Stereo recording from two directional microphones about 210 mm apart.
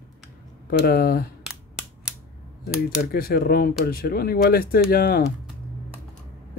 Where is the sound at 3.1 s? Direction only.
45° left (ahead or behind).